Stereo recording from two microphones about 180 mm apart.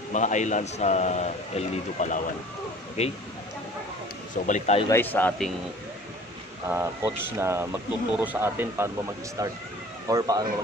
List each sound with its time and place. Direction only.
0.1 s speech: 40° left (ahead or behind)
4.5 s speech: 40° left (ahead or behind)
4.8 s speech: 10° left (ahead or behind)
6.7 s speech: 15° right (ahead or behind)